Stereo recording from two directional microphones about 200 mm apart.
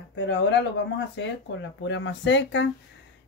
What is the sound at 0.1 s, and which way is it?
Speech, 65° left (ahead or behind).